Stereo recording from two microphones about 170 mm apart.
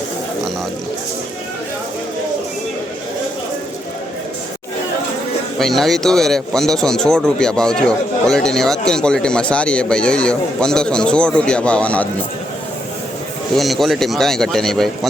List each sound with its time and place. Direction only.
5.5 s a man's voice: centre (ahead or behind)
13.6 s a man's voice: centre (ahead or behind)